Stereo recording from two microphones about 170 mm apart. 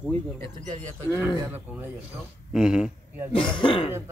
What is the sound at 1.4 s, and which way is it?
Speech, 10° right (ahead or behind).